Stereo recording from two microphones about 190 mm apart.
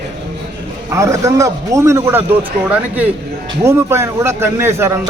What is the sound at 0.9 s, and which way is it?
A man's voice, 15° right (ahead or behind).